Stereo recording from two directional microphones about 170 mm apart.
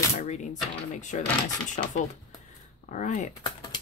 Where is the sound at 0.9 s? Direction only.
45° left (ahead or behind).